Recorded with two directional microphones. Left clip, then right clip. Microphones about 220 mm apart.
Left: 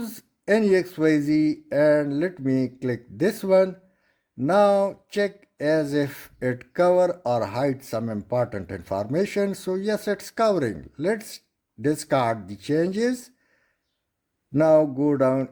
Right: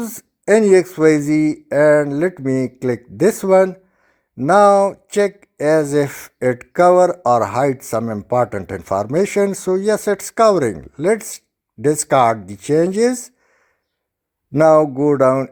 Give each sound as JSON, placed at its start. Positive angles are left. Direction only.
{"t": 0.0, "sound": "speech", "side_deg": -25}
{"t": 14.5, "sound": "speech", "side_deg": -25}